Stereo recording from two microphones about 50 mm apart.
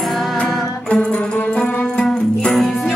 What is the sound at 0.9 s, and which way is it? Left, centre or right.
Music, left.